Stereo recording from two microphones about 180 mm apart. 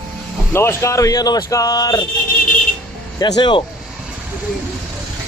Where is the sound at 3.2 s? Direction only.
25° left (ahead or behind).